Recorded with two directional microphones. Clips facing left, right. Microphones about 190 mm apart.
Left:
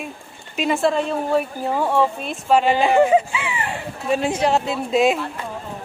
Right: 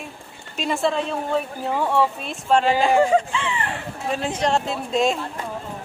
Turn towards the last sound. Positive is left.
turn(degrees=5)  # may be behind; listen again after turning